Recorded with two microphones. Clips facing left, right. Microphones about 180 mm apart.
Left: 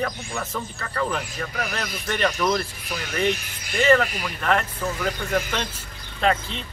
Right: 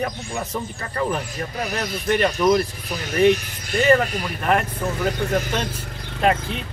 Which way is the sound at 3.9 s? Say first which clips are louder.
Right 1 dB; 10° right (ahead or behind).